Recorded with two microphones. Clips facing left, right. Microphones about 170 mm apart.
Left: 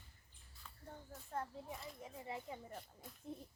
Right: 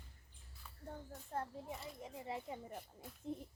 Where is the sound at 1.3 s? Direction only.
30° right (ahead or behind).